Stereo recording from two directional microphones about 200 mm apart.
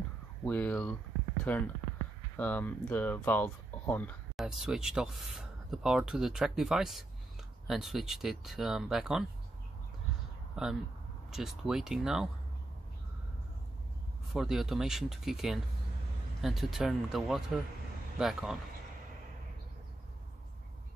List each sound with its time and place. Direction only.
0.5 s speech: 10° left (ahead or behind)
4.5 s speech: 5° right (ahead or behind)
10.5 s speech: centre (ahead or behind)
14.3 s speech: centre (ahead or behind)